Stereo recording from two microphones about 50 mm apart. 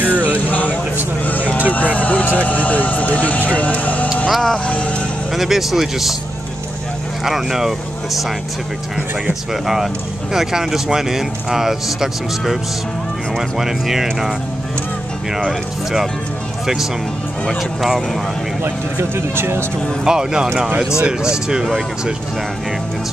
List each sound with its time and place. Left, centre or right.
0.0 s a sound: right
0.5 s a sound: left
1.2 s vehicle: left
2.0 s speech: left
4.3 s speech: centre
4.6 s speech: left
5.3 s speech: centre
7.2 s speech: centre
9.3 s speech: centre
18.6 s speech: right
20.1 s speech: centre